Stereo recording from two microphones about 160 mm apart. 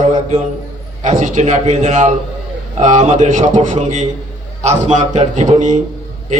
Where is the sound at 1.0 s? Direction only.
55° right (ahead or behind).